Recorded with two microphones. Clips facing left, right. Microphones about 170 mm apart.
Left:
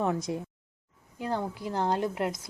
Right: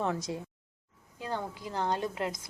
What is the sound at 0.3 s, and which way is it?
Speech, 25° left (ahead or behind).